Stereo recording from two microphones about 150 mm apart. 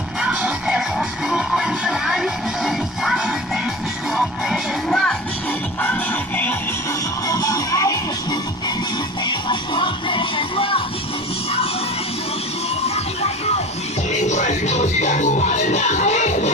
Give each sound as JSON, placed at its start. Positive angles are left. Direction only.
{"t": 0.2, "sound": "music", "side_deg": -5}
{"t": 7.2, "sound": "music", "side_deg": 25}
{"t": 9.5, "sound": "music", "side_deg": 35}
{"t": 12.8, "sound": "music", "side_deg": 45}